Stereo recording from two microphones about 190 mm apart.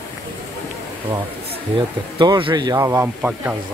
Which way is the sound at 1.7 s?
25° right (ahead or behind).